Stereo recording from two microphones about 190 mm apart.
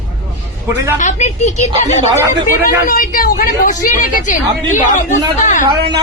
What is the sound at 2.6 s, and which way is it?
A woman's voice, 45° left (ahead or behind).